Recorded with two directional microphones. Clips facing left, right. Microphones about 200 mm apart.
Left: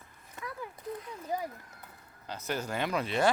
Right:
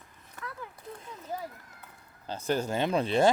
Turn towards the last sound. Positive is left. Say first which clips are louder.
# right 4 dB
turn(degrees=-30)  # may be behind; listen again after turning